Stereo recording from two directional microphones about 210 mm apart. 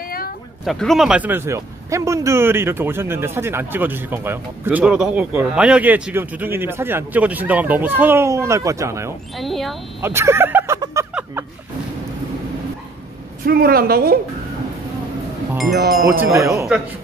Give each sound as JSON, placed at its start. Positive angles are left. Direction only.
{"t": 0.7, "sound": "speech", "side_deg": 0}
{"t": 9.4, "sound": "speech", "side_deg": 0}
{"t": 10.0, "sound": "a sound", "side_deg": -10}
{"t": 13.5, "sound": "a woman's voice", "side_deg": -45}
{"t": 15.9, "sound": "wind chime", "side_deg": 0}
{"t": 16.3, "sound": "speech", "side_deg": -15}